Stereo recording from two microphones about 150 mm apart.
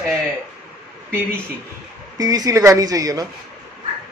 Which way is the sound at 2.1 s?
25° right (ahead or behind).